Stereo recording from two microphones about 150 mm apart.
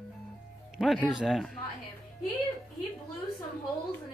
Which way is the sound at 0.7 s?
Centre (ahead or behind).